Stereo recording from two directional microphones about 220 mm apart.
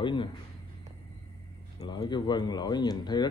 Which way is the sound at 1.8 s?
20° left (ahead or behind).